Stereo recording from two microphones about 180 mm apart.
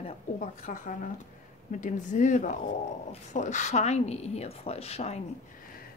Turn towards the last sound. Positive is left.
turn(degrees=35)  # may be behind; listen again after turning